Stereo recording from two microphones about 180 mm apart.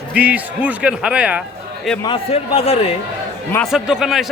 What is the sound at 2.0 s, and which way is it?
Speech, 30° left (ahead or behind).